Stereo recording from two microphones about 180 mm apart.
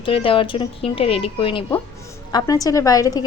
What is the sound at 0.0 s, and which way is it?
A woman's voice, 30° left (ahead or behind).